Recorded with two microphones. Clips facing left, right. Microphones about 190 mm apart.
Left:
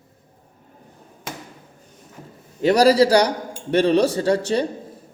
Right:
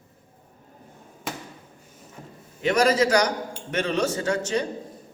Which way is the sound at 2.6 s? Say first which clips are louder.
Left 6 dB; 35° left (ahead or behind).